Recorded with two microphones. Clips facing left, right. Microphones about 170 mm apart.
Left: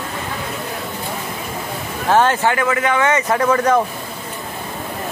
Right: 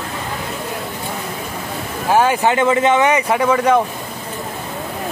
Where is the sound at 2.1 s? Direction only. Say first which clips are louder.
Right 1 dB; 10° right (ahead or behind).